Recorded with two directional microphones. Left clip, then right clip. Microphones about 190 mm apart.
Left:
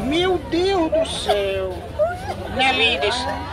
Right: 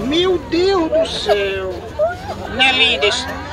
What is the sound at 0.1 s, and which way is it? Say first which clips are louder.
A woman's voice: right 4 dB; 10° left (ahead or behind).